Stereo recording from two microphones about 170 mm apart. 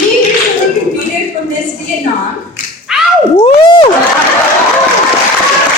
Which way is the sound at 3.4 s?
30° left (ahead or behind).